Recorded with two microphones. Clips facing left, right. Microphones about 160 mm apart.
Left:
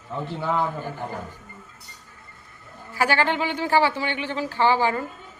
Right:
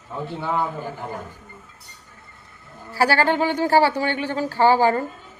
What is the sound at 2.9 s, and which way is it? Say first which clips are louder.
Speech: right 3 dB; 35° right (ahead or behind).